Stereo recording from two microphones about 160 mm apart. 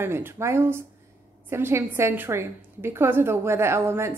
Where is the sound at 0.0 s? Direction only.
15° right (ahead or behind).